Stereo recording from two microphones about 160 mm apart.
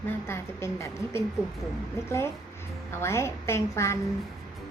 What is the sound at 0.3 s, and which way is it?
A child's voice, 15° left (ahead or behind).